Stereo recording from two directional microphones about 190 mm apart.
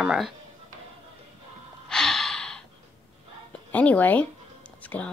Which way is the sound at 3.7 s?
10° left (ahead or behind).